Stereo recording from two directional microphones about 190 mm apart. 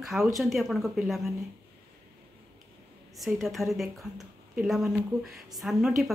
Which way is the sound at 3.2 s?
Centre (ahead or behind).